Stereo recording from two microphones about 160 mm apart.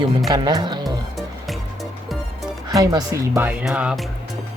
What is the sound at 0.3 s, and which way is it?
Speech, 25° right (ahead or behind).